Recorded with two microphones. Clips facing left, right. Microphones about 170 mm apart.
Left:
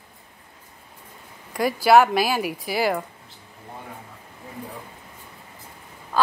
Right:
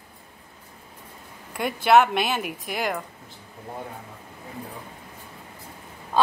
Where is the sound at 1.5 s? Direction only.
Centre (ahead or behind).